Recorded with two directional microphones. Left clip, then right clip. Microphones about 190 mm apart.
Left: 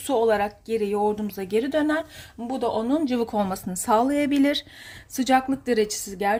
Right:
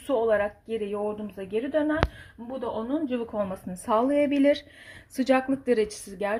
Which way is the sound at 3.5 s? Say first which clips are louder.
Left 5 dB; 30° left (ahead or behind).